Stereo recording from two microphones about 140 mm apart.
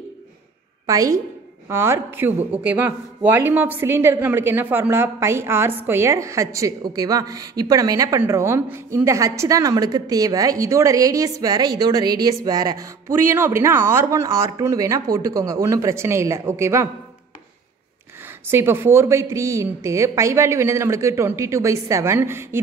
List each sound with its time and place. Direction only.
0.8 s a woman's voice: 25° right (ahead or behind)
18.5 s a woman's voice: 15° right (ahead or behind)